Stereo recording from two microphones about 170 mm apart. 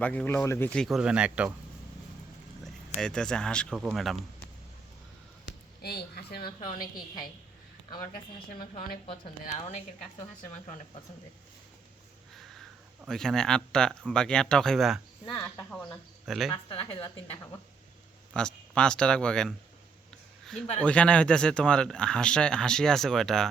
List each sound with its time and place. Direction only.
0.0 s speech: 10° left (ahead or behind); by 1.5 s 5° right (ahead or behind)
3.0 s speech: 5° left (ahead or behind)
5.8 s a woman's voice: 70° left (ahead or behind)
6.7 s a woman's voice: 55° left (ahead or behind)
9.4 s a woman's voice: 45° left (ahead or behind)
13.1 s speech: 5° left (ahead or behind)
15.3 s a woman's voice: 20° left (ahead or behind)
16.2 s speech: centre (ahead or behind)
16.6 s a woman's voice: 30° left (ahead or behind)
18.3 s speech: 5° left (ahead or behind)
20.8 s speech: 5° left (ahead or behind)